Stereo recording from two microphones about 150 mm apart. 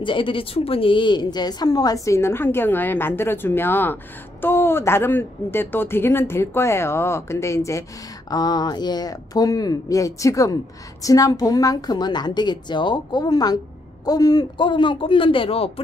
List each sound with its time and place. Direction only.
0.0 s a woman's voice: 35° left (ahead or behind)